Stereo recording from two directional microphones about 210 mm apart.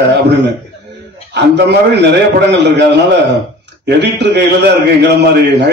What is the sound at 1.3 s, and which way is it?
A man's voice, 55° right (ahead or behind).